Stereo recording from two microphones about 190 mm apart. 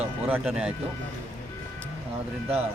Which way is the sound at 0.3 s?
10° right (ahead or behind).